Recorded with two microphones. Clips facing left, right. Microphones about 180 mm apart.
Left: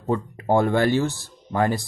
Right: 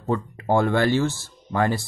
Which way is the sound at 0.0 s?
20° left (ahead or behind).